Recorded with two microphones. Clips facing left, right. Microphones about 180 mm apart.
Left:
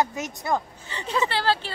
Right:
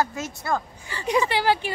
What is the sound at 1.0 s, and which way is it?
Speech, 15° right (ahead or behind).